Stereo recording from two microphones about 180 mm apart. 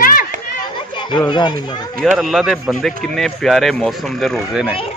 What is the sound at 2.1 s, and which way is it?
Speech, centre (ahead or behind).